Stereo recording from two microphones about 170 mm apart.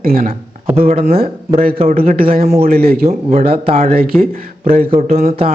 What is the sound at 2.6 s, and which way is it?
Speech, 60° right (ahead or behind).